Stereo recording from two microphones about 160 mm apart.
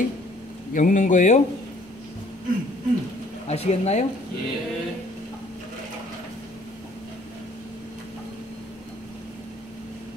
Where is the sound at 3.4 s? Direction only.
40° left (ahead or behind).